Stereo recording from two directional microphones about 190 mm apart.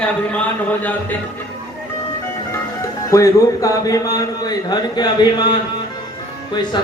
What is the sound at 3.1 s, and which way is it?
Speech, 15° left (ahead or behind).